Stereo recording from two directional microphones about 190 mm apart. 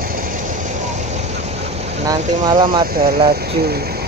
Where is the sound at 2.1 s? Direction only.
25° right (ahead or behind).